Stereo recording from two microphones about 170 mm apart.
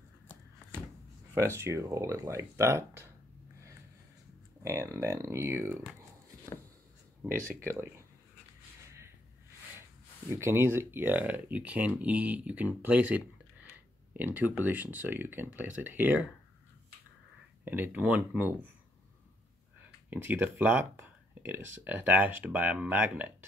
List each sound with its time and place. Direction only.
1.3 s speech: 15° right (ahead or behind)
4.6 s speech: 15° right (ahead or behind)
7.6 s speech: 15° right (ahead or behind)
10.3 s speech: 15° right (ahead or behind)
17.6 s speech: 10° right (ahead or behind)
20.1 s speech: 10° right (ahead or behind)